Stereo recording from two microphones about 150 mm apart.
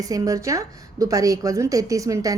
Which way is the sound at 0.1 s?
20° right (ahead or behind).